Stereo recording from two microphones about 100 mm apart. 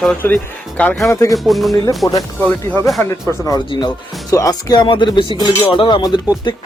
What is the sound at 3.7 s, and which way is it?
Speech, 45° left (ahead or behind).